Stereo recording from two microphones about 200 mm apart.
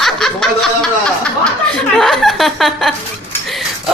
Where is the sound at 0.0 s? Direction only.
Centre (ahead or behind).